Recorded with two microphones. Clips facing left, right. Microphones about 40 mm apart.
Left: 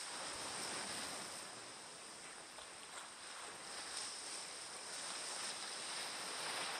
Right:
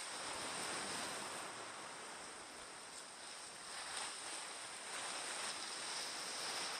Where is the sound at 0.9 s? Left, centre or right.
Right.